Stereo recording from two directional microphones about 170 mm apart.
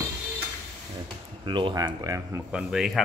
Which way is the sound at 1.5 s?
25° right (ahead or behind).